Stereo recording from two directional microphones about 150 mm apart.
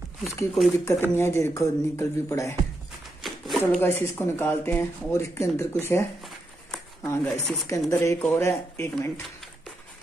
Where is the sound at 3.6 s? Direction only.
15° left (ahead or behind).